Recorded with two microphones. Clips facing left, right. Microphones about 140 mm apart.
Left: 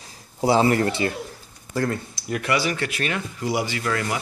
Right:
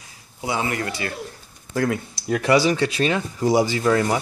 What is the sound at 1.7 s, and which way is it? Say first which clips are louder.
Speech: right 2 dB; centre (ahead or behind).